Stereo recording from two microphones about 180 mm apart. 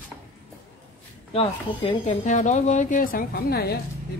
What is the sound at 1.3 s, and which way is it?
Speech, 30° left (ahead or behind).